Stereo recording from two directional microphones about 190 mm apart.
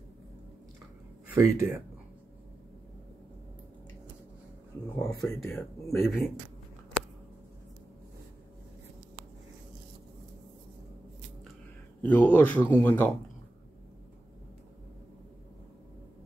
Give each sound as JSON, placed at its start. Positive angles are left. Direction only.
{"t": 1.3, "sound": "speech", "side_deg": -15}
{"t": 4.8, "sound": "speech", "side_deg": 15}
{"t": 12.0, "sound": "speech", "side_deg": 10}